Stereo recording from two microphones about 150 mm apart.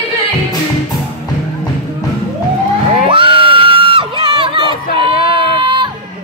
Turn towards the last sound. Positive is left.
turn(degrees=-35)  # may be behind; listen again after turning